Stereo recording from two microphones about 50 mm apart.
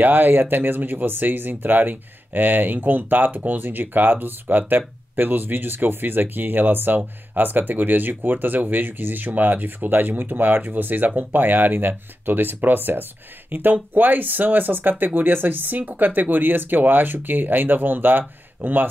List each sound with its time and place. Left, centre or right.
0.0 s speech: right